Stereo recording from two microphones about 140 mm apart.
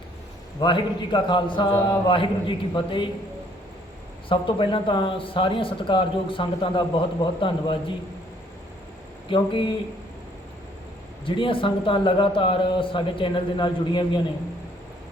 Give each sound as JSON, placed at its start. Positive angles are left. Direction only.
{"t": 0.6, "sound": "speech", "side_deg": 35}
{"t": 4.3, "sound": "speech", "side_deg": 35}
{"t": 9.3, "sound": "speech", "side_deg": 35}
{"t": 11.3, "sound": "speech", "side_deg": 40}